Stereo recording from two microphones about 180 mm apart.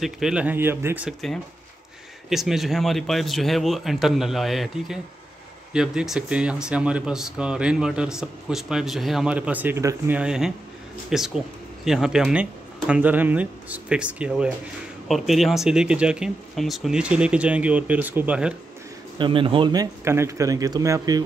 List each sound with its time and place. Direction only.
0.0 s speech: 5° right (ahead or behind)
2.2 s speech: centre (ahead or behind)
19.1 s a man's voice: 30° right (ahead or behind)